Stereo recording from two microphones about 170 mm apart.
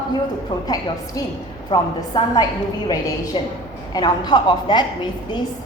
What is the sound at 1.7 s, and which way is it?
A woman's voice, 25° left (ahead or behind).